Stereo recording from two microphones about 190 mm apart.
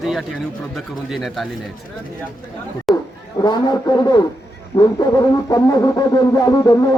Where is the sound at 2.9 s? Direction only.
Centre (ahead or behind).